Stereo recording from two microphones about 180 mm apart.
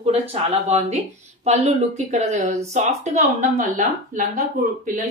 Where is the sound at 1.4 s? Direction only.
40° right (ahead or behind).